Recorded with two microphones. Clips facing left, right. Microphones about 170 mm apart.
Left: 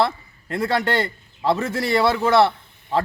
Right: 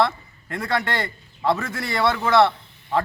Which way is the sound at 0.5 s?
30° left (ahead or behind).